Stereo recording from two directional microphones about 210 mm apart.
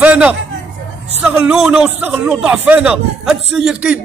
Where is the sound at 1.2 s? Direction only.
10° right (ahead or behind).